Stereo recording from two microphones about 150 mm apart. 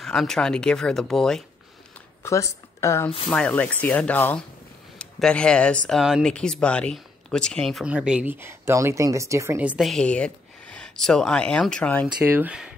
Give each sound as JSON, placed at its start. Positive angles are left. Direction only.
{"t": 0.0, "sound": "speech", "side_deg": 5}
{"t": 2.2, "sound": "speech", "side_deg": 20}
{"t": 3.3, "sound": "speech", "side_deg": 5}
{"t": 9.6, "sound": "speech", "side_deg": -10}
{"t": 9.8, "sound": "speech", "side_deg": 5}
{"t": 12.2, "sound": "speech", "side_deg": -10}